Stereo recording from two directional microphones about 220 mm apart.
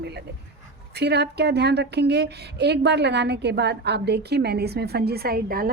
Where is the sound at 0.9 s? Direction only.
50° right (ahead or behind).